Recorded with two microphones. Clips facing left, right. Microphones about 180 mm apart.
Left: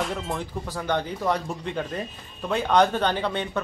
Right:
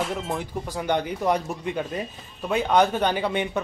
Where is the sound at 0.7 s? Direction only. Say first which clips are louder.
Right 2 dB; 15° right (ahead or behind).